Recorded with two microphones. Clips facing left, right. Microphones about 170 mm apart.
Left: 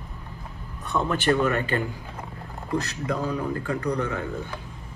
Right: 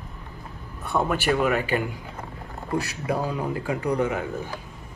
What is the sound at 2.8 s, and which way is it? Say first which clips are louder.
Speech: right 1 dB; 10° right (ahead or behind).